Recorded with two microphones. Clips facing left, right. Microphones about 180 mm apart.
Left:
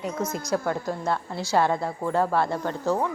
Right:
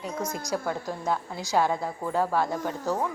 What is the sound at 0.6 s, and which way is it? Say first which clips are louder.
Speech: left 3 dB; centre (ahead or behind).